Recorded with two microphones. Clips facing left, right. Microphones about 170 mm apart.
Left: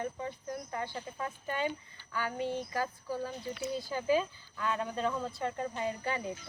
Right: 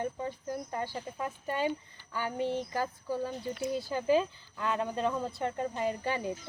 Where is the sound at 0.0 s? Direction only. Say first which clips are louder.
Right 3 dB; 30° right (ahead or behind).